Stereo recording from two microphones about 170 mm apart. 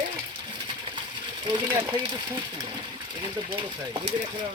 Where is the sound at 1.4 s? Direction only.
25° right (ahead or behind).